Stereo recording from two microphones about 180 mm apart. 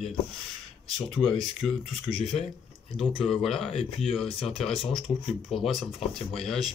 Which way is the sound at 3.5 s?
30° left (ahead or behind).